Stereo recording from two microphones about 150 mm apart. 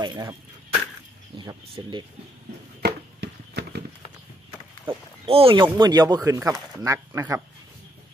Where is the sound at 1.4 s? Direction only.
30° right (ahead or behind).